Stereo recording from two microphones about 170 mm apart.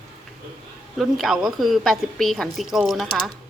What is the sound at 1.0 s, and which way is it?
A woman's voice, centre (ahead or behind).